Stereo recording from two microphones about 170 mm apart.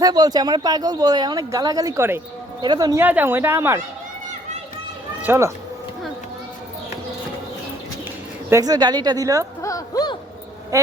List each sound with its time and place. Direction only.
0.0 s speech: 25° right (ahead or behind)
5.2 s speech: 15° right (ahead or behind)
8.4 s speech: 20° right (ahead or behind)
9.6 s a sound: 20° left (ahead or behind)